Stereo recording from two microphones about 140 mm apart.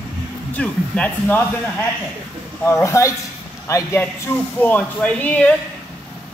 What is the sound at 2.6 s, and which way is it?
Speech, 20° left (ahead or behind).